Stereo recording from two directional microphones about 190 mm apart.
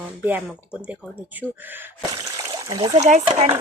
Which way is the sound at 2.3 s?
15° right (ahead or behind).